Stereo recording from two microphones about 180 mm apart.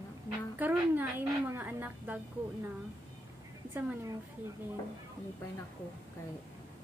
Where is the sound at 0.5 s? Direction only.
10° right (ahead or behind).